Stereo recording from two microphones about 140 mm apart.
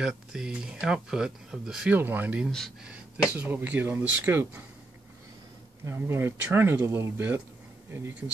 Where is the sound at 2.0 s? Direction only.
15° right (ahead or behind).